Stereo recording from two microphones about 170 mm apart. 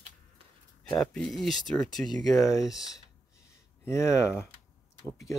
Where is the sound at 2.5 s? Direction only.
20° left (ahead or behind).